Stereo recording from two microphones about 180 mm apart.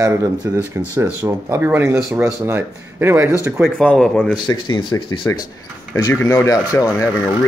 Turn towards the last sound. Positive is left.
turn(degrees=15)  # may be behind; listen again after turning